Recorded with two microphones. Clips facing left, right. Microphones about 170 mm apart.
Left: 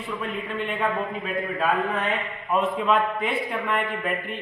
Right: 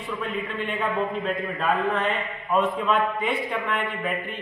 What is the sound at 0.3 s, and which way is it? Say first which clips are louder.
Speech: even; centre (ahead or behind).